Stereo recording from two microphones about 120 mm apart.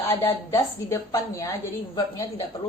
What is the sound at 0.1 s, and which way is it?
A woman's voice, 25° left (ahead or behind).